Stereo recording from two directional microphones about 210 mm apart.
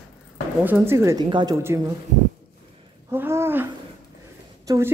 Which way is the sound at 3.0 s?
10° right (ahead or behind).